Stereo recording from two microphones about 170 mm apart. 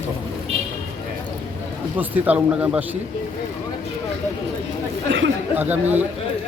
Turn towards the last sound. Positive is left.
turn(degrees=-10)  # may be behind; listen again after turning